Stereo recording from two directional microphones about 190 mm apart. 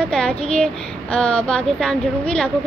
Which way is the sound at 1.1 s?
5° left (ahead or behind).